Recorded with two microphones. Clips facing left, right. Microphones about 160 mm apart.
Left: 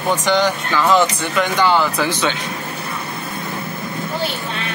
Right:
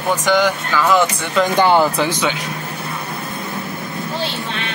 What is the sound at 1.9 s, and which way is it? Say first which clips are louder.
Speech: right 1 dB; 15° right (ahead or behind).